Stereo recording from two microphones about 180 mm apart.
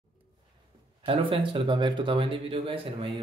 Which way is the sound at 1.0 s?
30° right (ahead or behind).